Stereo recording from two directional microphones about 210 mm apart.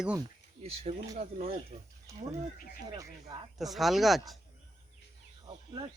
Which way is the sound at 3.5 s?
Centre (ahead or behind).